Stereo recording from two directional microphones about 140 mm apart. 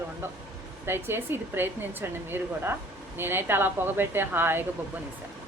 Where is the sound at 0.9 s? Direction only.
15° right (ahead or behind).